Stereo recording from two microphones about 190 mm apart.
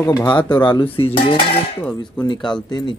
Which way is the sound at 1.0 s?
30° left (ahead or behind).